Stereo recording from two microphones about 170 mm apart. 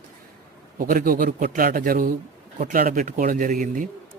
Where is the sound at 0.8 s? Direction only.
55° right (ahead or behind).